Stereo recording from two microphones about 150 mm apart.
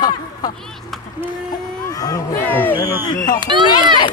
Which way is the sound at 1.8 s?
25° left (ahead or behind).